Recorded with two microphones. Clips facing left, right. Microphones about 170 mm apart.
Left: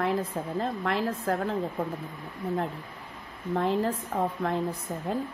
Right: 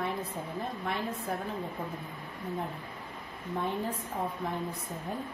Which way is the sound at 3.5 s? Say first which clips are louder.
Left 7 dB; 90° left.